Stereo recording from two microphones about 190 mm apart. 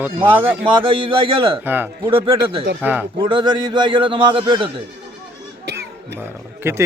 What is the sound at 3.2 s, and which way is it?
A man's voice, 25° right (ahead or behind).